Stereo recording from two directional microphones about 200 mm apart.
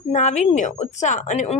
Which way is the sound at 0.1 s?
35° left (ahead or behind).